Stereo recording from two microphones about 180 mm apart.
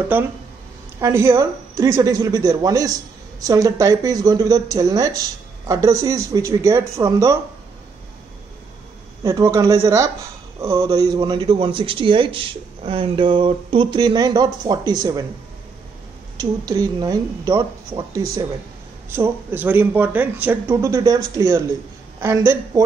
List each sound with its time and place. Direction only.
0.1 s speech: 10° right (ahead or behind)
9.2 s speech: 20° right (ahead or behind)
16.3 s speech: 20° right (ahead or behind)